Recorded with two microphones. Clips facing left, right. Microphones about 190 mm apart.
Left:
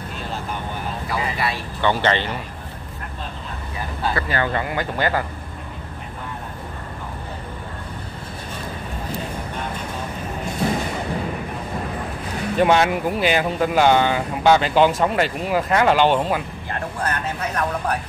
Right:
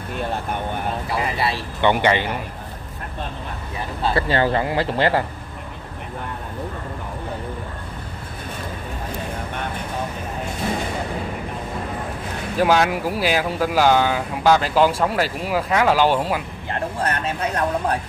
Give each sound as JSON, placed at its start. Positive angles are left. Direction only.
{"t": 1.0, "sound": "vehicle", "side_deg": -30}
{"t": 1.8, "sound": "speech", "side_deg": -15}
{"t": 4.1, "sound": "speech", "side_deg": -30}
{"t": 12.5, "sound": "speech", "side_deg": 0}
{"t": 17.0, "sound": "speech", "side_deg": -25}